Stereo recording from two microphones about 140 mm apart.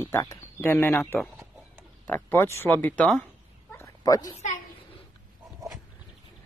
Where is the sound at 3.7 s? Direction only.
25° left (ahead or behind).